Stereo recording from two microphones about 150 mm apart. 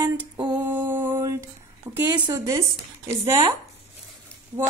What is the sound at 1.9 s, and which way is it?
Female singing, 15° right (ahead or behind).